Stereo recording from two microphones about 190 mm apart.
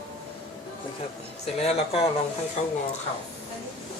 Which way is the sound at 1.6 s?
35° left (ahead or behind).